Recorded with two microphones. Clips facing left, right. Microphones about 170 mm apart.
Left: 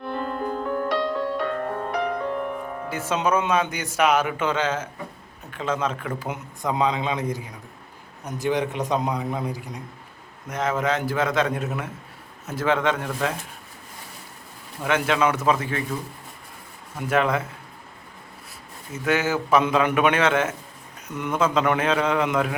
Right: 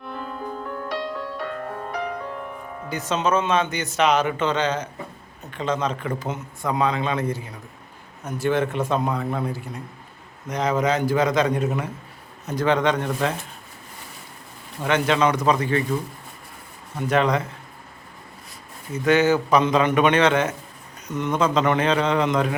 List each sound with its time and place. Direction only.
0.1 s music: 65° left (ahead or behind)
2.9 s a man's voice: 10° left (ahead or behind)
6.2 s a man's voice: 15° left (ahead or behind)
10.5 s a man's voice: centre (ahead or behind)
14.8 s a man's voice: 5° left (ahead or behind)
17.1 s a man's voice: 5° left (ahead or behind)
18.9 s a man's voice: 5° left (ahead or behind)